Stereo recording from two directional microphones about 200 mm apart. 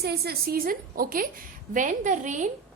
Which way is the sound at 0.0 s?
50° right (ahead or behind).